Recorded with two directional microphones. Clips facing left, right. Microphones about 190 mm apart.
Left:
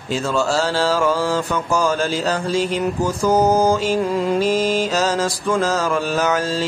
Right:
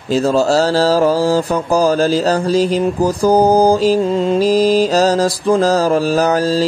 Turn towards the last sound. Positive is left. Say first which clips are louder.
# right 6 dB
turn(degrees=-35)  # may be behind; listen again after turning